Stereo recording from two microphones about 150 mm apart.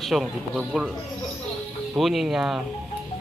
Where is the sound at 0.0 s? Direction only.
Centre (ahead or behind).